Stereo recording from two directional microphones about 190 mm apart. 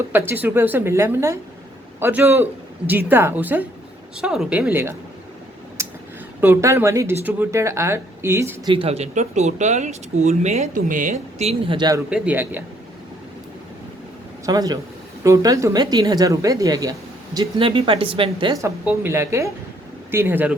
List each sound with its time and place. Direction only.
0.1 s a man's voice: 10° right (ahead or behind)
5.8 s a sound: 15° right (ahead or behind)
6.4 s speech: 15° right (ahead or behind)
8.7 s speech: 30° right (ahead or behind)
12.1 s speech: 5° right (ahead or behind)
14.4 s a woman's voice: 20° right (ahead or behind)